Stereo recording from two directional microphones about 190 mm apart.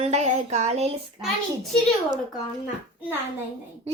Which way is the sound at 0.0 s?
35° right (ahead or behind).